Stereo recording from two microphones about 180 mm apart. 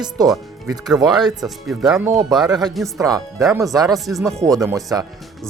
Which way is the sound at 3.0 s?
20° right (ahead or behind).